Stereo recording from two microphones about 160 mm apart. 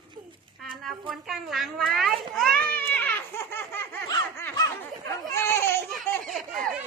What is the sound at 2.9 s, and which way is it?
Laughter, 10° left (ahead or behind).